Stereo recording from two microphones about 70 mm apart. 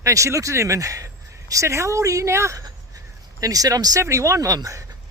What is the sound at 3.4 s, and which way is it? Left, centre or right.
Speech, right.